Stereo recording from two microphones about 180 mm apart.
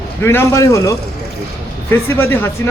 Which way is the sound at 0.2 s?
15° left (ahead or behind).